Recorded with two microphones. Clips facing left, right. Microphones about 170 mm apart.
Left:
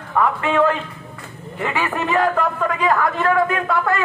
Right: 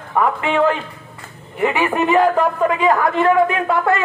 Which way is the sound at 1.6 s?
20° right (ahead or behind).